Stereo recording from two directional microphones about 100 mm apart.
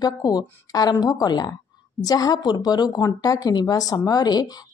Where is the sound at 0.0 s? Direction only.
40° left (ahead or behind).